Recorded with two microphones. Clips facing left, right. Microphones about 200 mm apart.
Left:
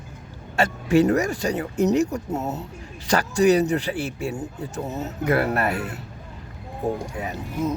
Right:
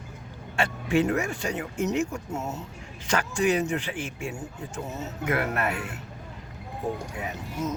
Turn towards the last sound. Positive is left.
turn(degrees=35)  # may be behind; listen again after turning